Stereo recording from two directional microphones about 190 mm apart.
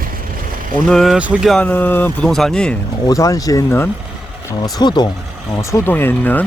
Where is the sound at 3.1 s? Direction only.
20° left (ahead or behind).